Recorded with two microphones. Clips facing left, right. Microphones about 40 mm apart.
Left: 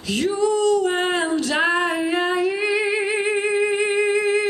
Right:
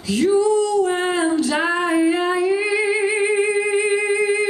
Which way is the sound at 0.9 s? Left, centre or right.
Centre.